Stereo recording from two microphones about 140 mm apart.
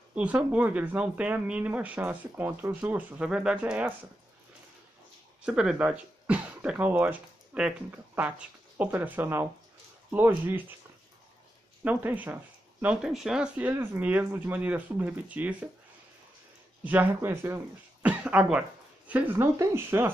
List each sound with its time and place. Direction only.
0.1 s speech: 10° right (ahead or behind)
5.4 s speech: 5° right (ahead or behind)
11.8 s speech: 10° right (ahead or behind)
16.8 s speech: 15° right (ahead or behind)